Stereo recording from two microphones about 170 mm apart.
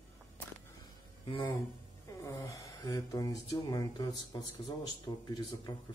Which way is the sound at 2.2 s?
20° left (ahead or behind).